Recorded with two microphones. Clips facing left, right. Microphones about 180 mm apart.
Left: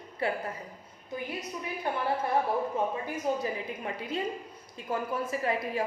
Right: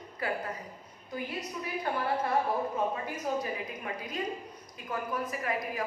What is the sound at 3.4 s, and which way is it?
A woman's voice, 30° left (ahead or behind).